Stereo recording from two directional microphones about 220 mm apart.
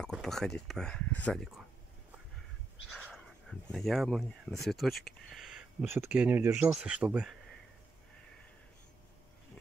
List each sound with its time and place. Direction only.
0.0 s speech: centre (ahead or behind)
2.9 s speech: 5° left (ahead or behind)